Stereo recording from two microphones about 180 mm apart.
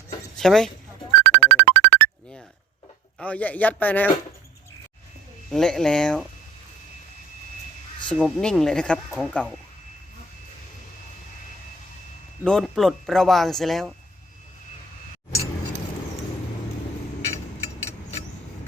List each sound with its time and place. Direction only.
0.3 s speech: 5° left (ahead or behind)
1.2 s music: 80° right
3.2 s a man's voice: 5° left (ahead or behind)
5.5 s speech: centre (ahead or behind)
8.0 s speech: centre (ahead or behind)
12.5 s speech: centre (ahead or behind)